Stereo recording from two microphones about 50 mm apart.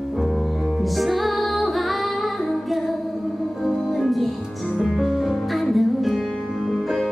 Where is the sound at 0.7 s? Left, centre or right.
Centre.